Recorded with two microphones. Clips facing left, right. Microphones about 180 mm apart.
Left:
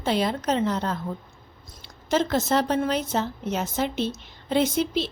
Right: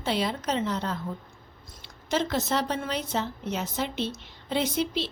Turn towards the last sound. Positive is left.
turn(degrees=45)  # may be behind; listen again after turning